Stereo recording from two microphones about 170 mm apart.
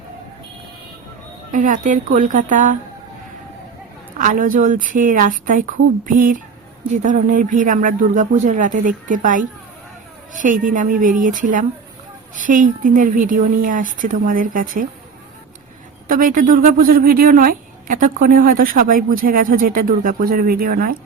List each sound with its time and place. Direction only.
1.5 s speech: 50° right (ahead or behind)
4.2 s speech: 50° right (ahead or behind)
16.0 s speech: 55° right (ahead or behind)